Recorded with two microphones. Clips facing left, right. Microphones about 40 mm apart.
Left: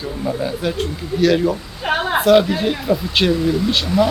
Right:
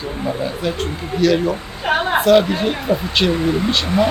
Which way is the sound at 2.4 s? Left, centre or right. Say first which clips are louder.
Even; centre.